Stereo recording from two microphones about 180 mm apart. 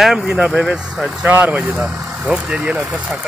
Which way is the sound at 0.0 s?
Centre (ahead or behind).